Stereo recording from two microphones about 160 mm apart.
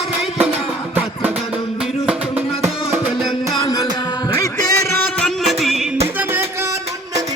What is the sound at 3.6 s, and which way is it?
Music, 20° left (ahead or behind).